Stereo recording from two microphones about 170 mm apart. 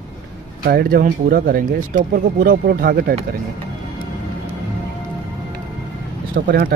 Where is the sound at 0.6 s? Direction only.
65° right (ahead or behind).